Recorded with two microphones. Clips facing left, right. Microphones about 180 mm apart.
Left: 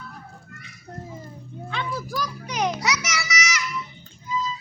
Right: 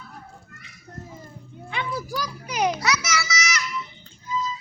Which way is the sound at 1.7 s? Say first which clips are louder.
Even; 10° right (ahead or behind).